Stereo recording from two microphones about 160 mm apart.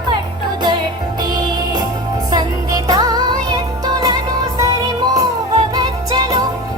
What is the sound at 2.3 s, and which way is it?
Music, 25° right (ahead or behind).